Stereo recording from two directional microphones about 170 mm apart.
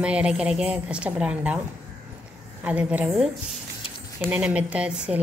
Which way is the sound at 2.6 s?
5° right (ahead or behind).